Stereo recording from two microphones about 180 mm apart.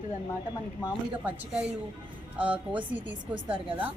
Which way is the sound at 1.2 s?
5° right (ahead or behind).